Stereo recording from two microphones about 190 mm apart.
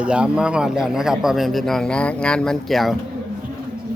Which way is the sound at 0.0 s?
5° right (ahead or behind).